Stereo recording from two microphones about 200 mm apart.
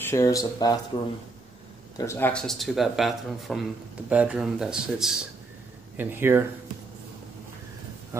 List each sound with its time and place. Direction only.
0.0 s speech: 15° left (ahead or behind)
2.0 s speech: 10° left (ahead or behind); by 6.4 s 10° right (ahead or behind)
8.1 s speech: 15° right (ahead or behind)